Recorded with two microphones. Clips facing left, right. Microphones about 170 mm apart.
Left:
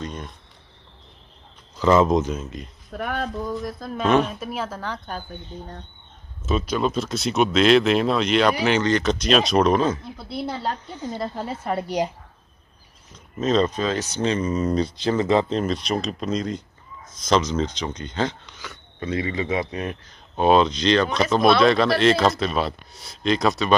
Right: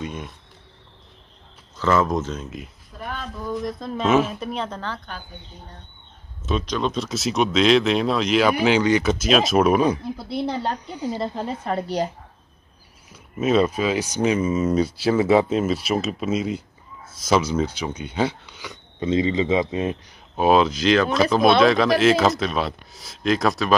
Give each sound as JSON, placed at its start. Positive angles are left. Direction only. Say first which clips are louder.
{"t": 0.0, "sound": "cricket", "louder": "right 1 dB", "side_deg": -10}
{"t": 1.8, "sound": "speech", "louder": "left 3 dB", "side_deg": 20}
{"t": 2.4, "sound": "speech", "louder": "even", "side_deg": -5}
{"t": 2.9, "sound": "speech", "louder": "left 6 dB", "side_deg": 65}
{"t": 3.4, "sound": "speech", "louder": "right 2 dB", "side_deg": 0}
{"t": 6.4, "sound": "speech", "louder": "left 1 dB", "side_deg": 5}
{"t": 11.6, "sound": "speech", "louder": "left 1 dB", "side_deg": 10}
{"t": 13.1, "sound": "speech", "louder": "right 2 dB", "side_deg": -10}
{"t": 20.1, "sound": "speech", "louder": "left 1 dB", "side_deg": -5}